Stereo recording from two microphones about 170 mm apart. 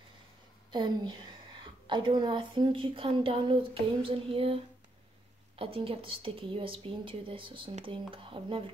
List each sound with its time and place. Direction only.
0.7 s a woman's voice: 25° right (ahead or behind)
5.6 s a woman's voice: 30° right (ahead or behind)